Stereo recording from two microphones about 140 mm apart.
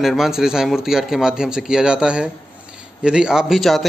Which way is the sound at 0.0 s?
Centre (ahead or behind).